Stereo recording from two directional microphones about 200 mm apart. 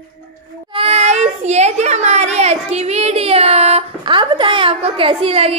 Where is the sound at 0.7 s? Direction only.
30° right (ahead or behind).